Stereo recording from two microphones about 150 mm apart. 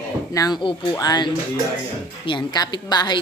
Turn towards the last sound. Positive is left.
turn(degrees=30)  # may be behind; listen again after turning